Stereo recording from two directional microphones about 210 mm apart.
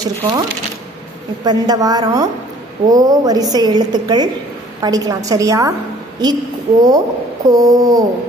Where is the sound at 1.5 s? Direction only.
20° right (ahead or behind).